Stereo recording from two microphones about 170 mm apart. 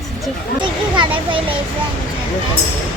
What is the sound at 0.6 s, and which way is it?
Speech, 30° right (ahead or behind).